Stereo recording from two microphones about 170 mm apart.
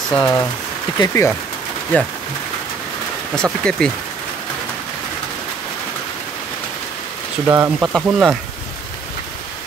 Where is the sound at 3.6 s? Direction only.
5° left (ahead or behind).